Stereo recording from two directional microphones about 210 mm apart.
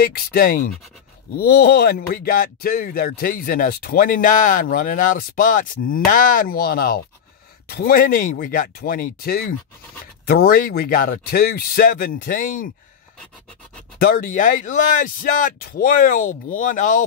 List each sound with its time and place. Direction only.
0.0 s speech: 45° left (ahead or behind)
13.9 s speech: 45° left (ahead or behind)